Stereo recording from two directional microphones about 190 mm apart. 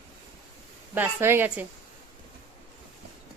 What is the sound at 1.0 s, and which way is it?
Speech, 10° right (ahead or behind).